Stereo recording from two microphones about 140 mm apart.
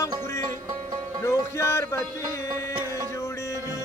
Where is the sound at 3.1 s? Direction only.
20° left (ahead or behind).